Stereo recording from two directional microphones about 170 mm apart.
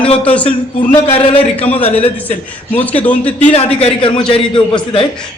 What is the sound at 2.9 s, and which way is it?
Speech, 10° left (ahead or behind).